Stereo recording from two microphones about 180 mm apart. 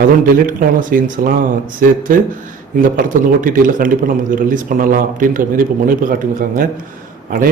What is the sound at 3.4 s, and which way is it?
A man's voice, 50° right (ahead or behind).